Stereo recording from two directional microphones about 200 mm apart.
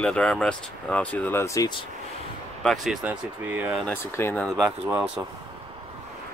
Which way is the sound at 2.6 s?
Centre (ahead or behind).